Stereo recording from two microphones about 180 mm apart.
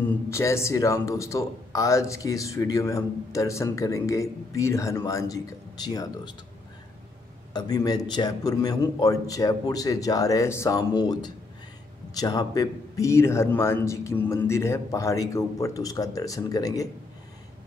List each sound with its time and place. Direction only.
0.3 s speech: 15° left (ahead or behind)
7.5 s a man's voice: 20° left (ahead or behind)